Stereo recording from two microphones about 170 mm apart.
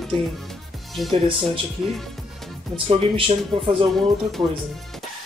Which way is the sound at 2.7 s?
30° right (ahead or behind).